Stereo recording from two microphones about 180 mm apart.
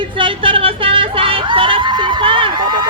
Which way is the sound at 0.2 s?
30° right (ahead or behind).